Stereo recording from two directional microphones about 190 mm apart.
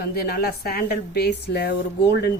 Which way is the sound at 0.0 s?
55° left (ahead or behind).